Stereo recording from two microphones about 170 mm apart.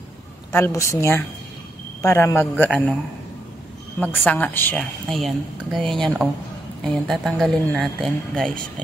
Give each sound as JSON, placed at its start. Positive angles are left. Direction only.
{"t": 0.5, "sound": "speech", "side_deg": 15}
{"t": 4.0, "sound": "speech", "side_deg": 10}